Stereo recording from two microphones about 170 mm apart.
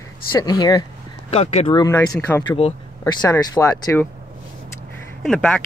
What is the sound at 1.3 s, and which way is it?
Speech, 35° left (ahead or behind).